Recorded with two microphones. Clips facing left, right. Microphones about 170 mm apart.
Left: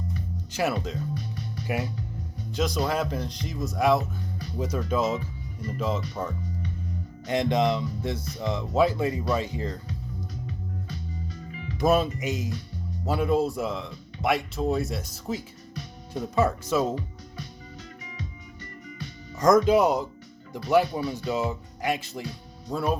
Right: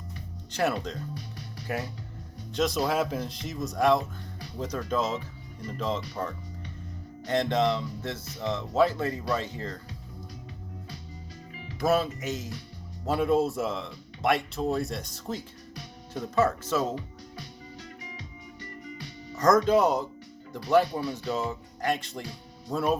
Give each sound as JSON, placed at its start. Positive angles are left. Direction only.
{"t": 0.5, "sound": "speech", "side_deg": 5}
{"t": 7.3, "sound": "speech", "side_deg": 15}
{"t": 11.8, "sound": "speech", "side_deg": 20}
{"t": 13.1, "sound": "speech", "side_deg": 0}
{"t": 19.4, "sound": "speech", "side_deg": 10}